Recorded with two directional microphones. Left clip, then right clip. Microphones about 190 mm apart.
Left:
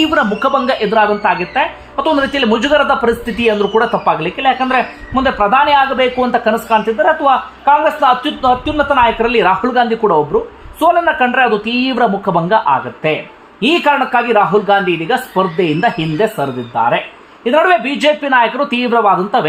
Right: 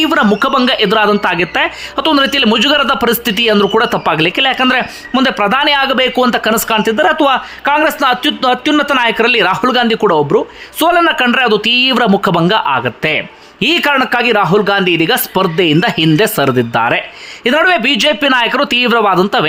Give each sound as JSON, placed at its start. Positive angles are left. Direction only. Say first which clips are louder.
{"t": 0.0, "sound": "a man's voice", "louder": "right 2 dB", "side_deg": -25}
{"t": 0.9, "sound": "speech", "louder": "right 1 dB", "side_deg": -35}
{"t": 2.0, "sound": "a man's voice", "louder": "right 2 dB", "side_deg": -25}